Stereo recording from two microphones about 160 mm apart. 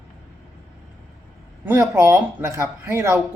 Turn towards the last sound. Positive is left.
turn(degrees=-15)  # may be behind; listen again after turning